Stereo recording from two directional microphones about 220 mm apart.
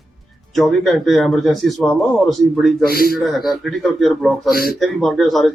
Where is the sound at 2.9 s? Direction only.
45° left (ahead or behind).